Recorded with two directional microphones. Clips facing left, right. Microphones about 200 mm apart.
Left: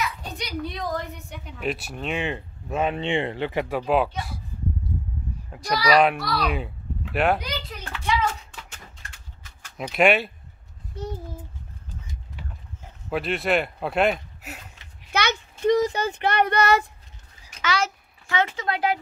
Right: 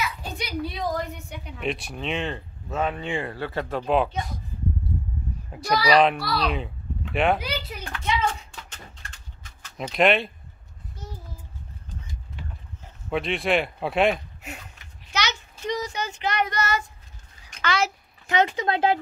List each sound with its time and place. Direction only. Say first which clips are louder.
0.0 s a sound: even; centre (ahead or behind)
2.2 s speech: left 2 dB; 15° left (ahead or behind)
3.8 s speech: right 2 dB; centre (ahead or behind)
5.9 s a child's voice: left 1 dB; 5° left (ahead or behind)
8.3 s a sound: right 1 dB; 5° left (ahead or behind)
13.1 s speech: even; centre (ahead or behind)
15.0 s speech: left 4 dB; 55° left (ahead or behind)
17.5 s a sound: even; 5° left (ahead or behind)
18.2 s speech: right 3 dB; 20° right (ahead or behind)